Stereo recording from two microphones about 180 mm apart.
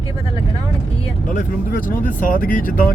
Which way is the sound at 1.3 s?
50° left (ahead or behind).